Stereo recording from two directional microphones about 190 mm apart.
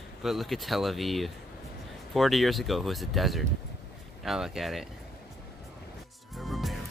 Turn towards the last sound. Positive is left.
turn(degrees=0)  # may be behind; listen again after turning